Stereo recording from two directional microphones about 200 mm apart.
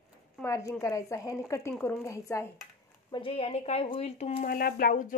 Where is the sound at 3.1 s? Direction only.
30° left (ahead or behind).